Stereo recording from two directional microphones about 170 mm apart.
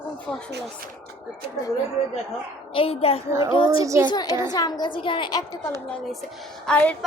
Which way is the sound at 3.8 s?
20° right (ahead or behind).